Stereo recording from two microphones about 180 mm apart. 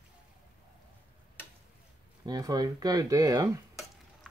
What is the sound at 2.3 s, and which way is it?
Speech, 20° right (ahead or behind).